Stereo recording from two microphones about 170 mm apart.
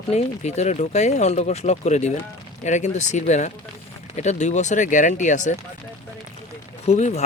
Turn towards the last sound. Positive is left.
turn(degrees=40)  # may be behind; listen again after turning